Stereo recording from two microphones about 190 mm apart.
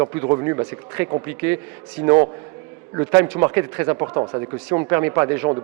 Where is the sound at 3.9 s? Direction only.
25° right (ahead or behind).